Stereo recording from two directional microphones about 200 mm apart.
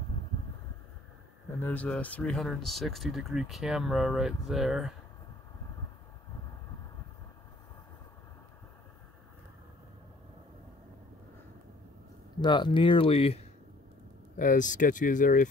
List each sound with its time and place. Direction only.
1.6 s speech: 10° left (ahead or behind)
12.4 s speech: 20° left (ahead or behind)
14.3 s speech: 40° left (ahead or behind)